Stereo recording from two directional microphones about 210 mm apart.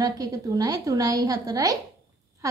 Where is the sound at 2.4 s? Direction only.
15° right (ahead or behind).